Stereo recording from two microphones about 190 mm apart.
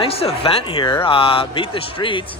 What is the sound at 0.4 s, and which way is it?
A man's voice, 30° left (ahead or behind).